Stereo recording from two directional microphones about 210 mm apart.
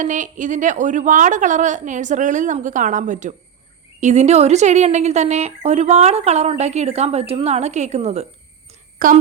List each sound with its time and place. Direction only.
0.0 s a woman's voice: 35° right (ahead or behind)
9.0 s speech: 45° right (ahead or behind)